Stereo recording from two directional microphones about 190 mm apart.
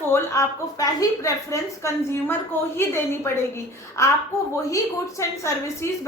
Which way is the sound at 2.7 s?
15° left (ahead or behind).